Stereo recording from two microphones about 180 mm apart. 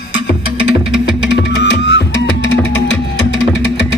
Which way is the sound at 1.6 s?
75° left (ahead or behind).